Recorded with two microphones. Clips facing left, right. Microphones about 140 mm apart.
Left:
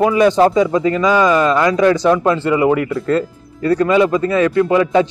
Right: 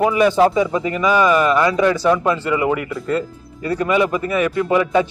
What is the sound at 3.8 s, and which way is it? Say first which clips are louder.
Speech: left 2 dB; 25° left (ahead or behind).